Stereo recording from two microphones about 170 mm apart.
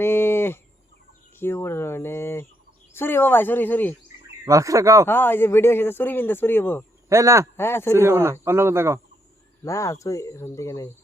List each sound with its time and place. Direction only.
0.0 s bird: 15° left (ahead or behind)
1.4 s speech: 15° left (ahead or behind)
4.4 s speech: 20° right (ahead or behind)
5.0 s speech: 10° left (ahead or behind)
7.1 s speech: 15° right (ahead or behind)
7.5 s speech: 15° left (ahead or behind)
7.9 s speech: 15° right (ahead or behind)
9.6 s speech: 15° left (ahead or behind)